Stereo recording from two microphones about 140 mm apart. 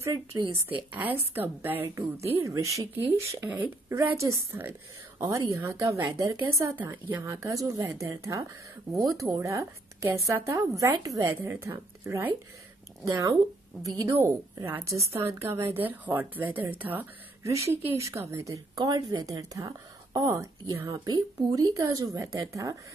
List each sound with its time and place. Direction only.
0.0 s a woman's voice: 20° right (ahead or behind)
0.4 s speech: 40° right (ahead or behind)
0.9 s a woman's voice: 10° right (ahead or behind)